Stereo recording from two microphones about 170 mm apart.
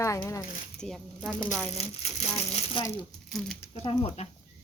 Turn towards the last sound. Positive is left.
turn(degrees=35)  # may be behind; listen again after turning